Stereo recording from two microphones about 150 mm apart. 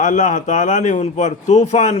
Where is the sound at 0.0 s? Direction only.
55° left (ahead or behind).